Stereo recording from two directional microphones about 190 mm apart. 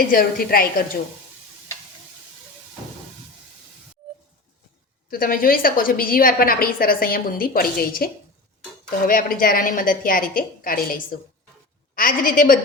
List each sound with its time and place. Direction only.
0.1 s a woman's voice: 50° left (ahead or behind)
5.1 s a woman's voice: 50° left (ahead or behind)